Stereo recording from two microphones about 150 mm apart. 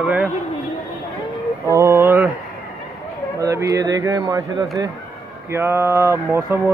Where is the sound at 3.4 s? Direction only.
20° right (ahead or behind).